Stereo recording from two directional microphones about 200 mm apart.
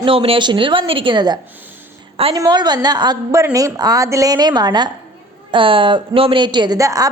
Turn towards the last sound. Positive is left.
turn(degrees=-15)  # may be behind; listen again after turning